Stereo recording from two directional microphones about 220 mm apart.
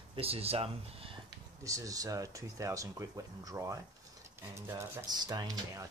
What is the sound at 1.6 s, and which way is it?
Rub, 15° right (ahead or behind).